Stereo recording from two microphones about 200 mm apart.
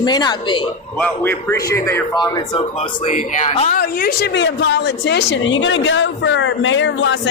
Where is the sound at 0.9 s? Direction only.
10° left (ahead or behind); by 3.8 s 35° left (ahead or behind).